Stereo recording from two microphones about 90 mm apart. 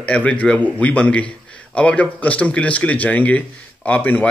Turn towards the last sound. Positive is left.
turn(degrees=20)  # may be behind; listen again after turning